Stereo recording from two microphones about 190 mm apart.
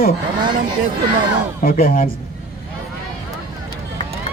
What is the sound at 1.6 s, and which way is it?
Speech, 50° left (ahead or behind).